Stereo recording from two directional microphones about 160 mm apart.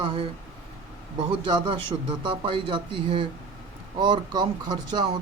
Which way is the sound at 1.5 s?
30° right (ahead or behind).